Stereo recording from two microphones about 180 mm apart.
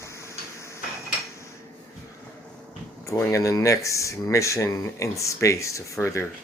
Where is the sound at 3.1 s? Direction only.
15° left (ahead or behind).